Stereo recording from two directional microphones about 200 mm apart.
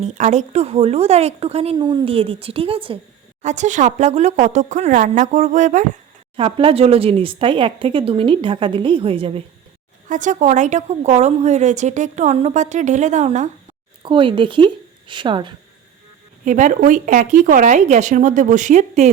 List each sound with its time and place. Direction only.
0.0 s a woman's voice: 35° right (ahead or behind)
6.3 s speech: 25° right (ahead or behind)
10.1 s a woman's voice: 40° right (ahead or behind)
14.0 s speech: 25° right (ahead or behind)
16.4 s a woman's voice: 40° right (ahead or behind)